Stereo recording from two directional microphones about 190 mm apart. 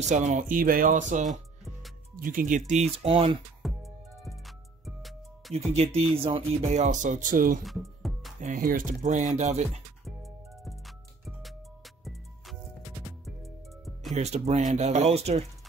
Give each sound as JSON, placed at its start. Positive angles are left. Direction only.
{"t": 0.1, "sound": "speech", "side_deg": -40}
{"t": 3.6, "sound": "music", "side_deg": 0}
{"t": 6.1, "sound": "speech", "side_deg": -30}
{"t": 7.6, "sound": "music", "side_deg": 0}
{"t": 8.4, "sound": "speech", "side_deg": -45}
{"t": 10.0, "sound": "music", "side_deg": 0}
{"t": 14.1, "sound": "speech", "side_deg": -35}